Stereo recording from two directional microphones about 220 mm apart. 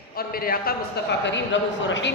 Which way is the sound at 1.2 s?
55° left (ahead or behind).